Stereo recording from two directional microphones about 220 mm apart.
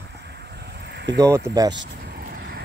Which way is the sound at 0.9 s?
50° right (ahead or behind).